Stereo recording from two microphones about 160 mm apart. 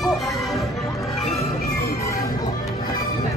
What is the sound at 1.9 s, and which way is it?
Music, 20° left (ahead or behind).